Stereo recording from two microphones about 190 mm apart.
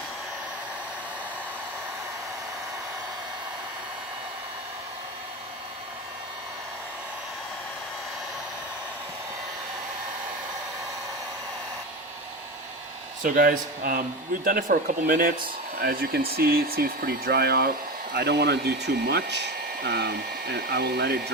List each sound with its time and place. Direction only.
13.2 s speech: 50° right (ahead or behind)